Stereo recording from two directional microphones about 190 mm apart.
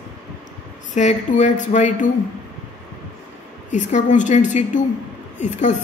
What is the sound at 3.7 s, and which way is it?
A man's voice, 40° left (ahead or behind).